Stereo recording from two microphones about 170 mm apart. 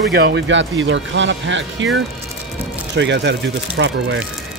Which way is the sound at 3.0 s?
90° right.